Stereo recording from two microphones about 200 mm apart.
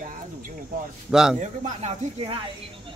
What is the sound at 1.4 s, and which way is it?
Speech, 35° right (ahead or behind).